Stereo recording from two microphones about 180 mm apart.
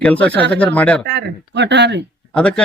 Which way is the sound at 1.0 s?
70° right (ahead or behind).